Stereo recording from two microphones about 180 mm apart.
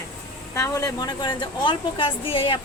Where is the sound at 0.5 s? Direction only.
15° left (ahead or behind).